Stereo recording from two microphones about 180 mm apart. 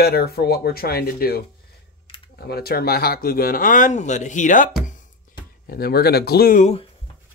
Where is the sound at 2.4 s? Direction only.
60° left (ahead or behind); by 4.6 s 45° left (ahead or behind).